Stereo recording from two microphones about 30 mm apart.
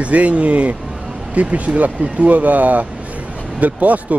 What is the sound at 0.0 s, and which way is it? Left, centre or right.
Speech, right.